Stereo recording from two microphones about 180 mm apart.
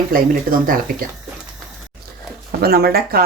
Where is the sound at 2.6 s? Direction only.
60° right (ahead or behind).